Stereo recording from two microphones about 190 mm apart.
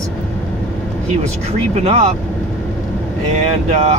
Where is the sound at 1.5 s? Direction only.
35° right (ahead or behind).